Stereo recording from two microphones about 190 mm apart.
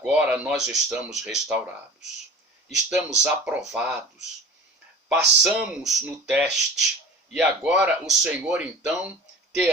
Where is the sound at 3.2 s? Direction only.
5° right (ahead or behind).